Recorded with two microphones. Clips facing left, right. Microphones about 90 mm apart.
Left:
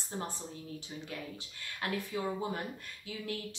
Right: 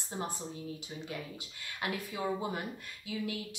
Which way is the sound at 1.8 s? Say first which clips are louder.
Even; 15° right (ahead or behind).